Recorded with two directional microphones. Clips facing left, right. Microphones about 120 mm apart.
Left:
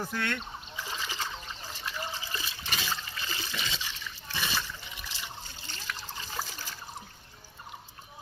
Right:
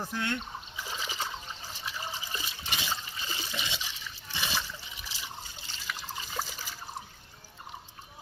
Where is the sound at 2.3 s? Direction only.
20° right (ahead or behind).